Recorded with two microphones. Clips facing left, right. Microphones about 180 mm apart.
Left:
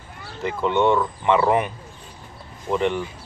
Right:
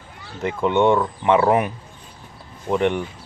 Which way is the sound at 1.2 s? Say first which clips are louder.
Right 2 dB; 5° right (ahead or behind).